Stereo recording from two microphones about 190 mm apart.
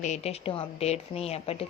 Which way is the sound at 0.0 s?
35° left (ahead or behind).